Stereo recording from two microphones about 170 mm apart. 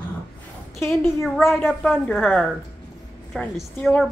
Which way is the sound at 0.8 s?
15° left (ahead or behind).